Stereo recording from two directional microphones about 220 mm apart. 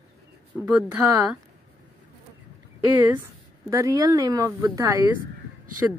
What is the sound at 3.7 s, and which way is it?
Speech, 15° right (ahead or behind).